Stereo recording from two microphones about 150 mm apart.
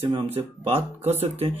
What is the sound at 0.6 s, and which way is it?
Speech, 45° right (ahead or behind).